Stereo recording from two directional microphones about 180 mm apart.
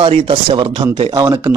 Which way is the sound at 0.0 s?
30° right (ahead or behind).